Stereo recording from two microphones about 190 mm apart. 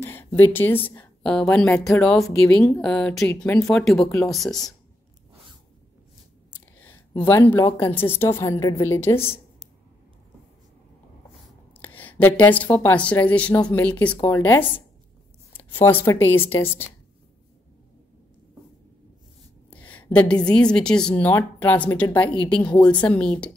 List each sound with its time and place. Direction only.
0.0 s speech: 10° left (ahead or behind)
6.8 s speech: 10° left (ahead or behind)
7.8 s a woman's voice: 30° left (ahead or behind)
8.1 s speech: 15° left (ahead or behind)
11.8 s a woman's voice: 10° left (ahead or behind)
19.7 s a sound: 10° left (ahead or behind)
20.4 s speech: 5° left (ahead or behind)